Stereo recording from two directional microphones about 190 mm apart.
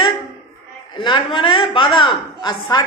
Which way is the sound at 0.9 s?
25° left (ahead or behind).